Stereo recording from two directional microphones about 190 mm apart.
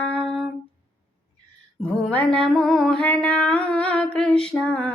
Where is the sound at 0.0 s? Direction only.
5° left (ahead or behind).